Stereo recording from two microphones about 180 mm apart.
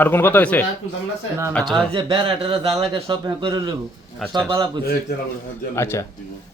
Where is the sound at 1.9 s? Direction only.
30° right (ahead or behind).